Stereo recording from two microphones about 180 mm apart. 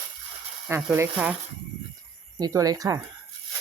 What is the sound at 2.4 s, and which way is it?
Speech, 20° right (ahead or behind).